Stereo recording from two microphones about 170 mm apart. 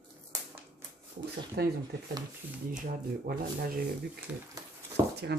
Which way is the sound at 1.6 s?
70° right (ahead or behind).